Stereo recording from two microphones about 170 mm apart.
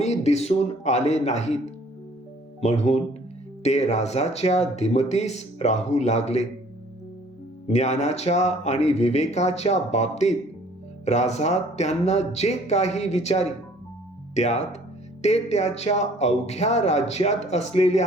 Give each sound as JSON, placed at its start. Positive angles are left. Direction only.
{"t": 0.0, "sound": "speech", "side_deg": 40}
{"t": 2.6, "sound": "speech", "side_deg": 40}
{"t": 7.7, "sound": "speech", "side_deg": 40}